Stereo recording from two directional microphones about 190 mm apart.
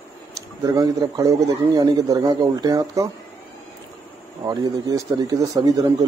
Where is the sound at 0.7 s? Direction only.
20° right (ahead or behind).